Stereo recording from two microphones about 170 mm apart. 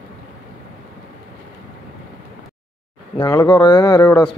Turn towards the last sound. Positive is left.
turn(degrees=25)  # may be behind; listen again after turning